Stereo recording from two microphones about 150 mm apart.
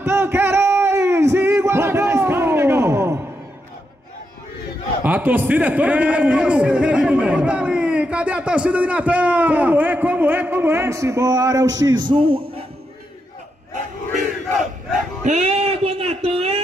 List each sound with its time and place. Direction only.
0.0 s music: 15° right (ahead or behind)
5.0 s a man's voice: 10° right (ahead or behind); by 12.6 s 40° right (ahead or behind)
15.2 s a sound: 45° right (ahead or behind)